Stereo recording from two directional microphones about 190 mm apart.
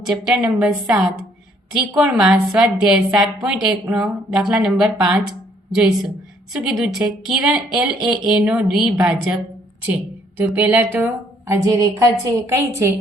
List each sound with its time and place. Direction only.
0.0 s a woman's voice: 5° right (ahead or behind)
6.6 s a woman's voice: centre (ahead or behind)